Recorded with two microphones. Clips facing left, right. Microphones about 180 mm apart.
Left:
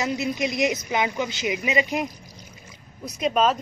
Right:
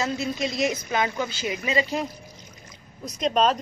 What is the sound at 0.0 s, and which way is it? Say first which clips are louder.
A woman's voice: left 1 dB; 15° left (ahead or behind).